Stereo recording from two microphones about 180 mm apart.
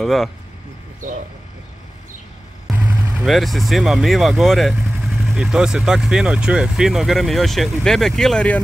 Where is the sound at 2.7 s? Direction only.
5° right (ahead or behind).